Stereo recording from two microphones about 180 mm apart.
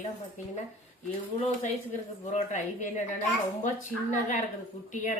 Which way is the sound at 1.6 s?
40° left (ahead or behind).